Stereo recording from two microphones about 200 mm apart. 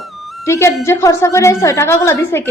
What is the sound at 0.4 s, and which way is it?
A woman's voice, 15° left (ahead or behind).